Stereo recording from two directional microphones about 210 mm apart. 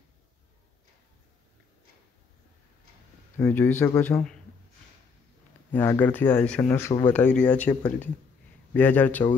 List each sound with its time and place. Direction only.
3.3 s speech: 10° left (ahead or behind)
5.7 s speech: 10° left (ahead or behind)